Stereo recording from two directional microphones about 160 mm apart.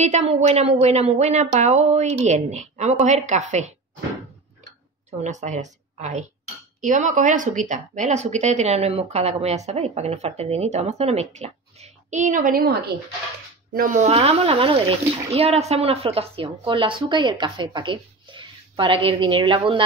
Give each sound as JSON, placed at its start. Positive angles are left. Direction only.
{"t": 0.0, "sound": "speech", "side_deg": -45}
{"t": 5.2, "sound": "speech", "side_deg": -50}
{"t": 13.7, "sound": "speech", "side_deg": -55}
{"t": 14.0, "sound": "speech", "side_deg": -40}